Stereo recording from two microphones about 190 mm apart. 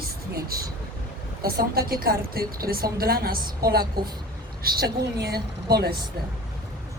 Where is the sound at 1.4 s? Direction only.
55° right (ahead or behind).